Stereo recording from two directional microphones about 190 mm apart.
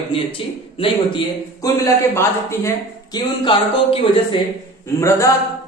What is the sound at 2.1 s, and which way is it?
Speech, 15° left (ahead or behind).